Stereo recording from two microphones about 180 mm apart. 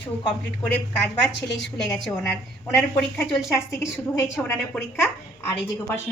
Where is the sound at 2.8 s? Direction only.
5° left (ahead or behind).